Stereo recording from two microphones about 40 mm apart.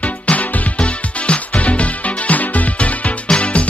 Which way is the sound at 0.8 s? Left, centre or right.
Left.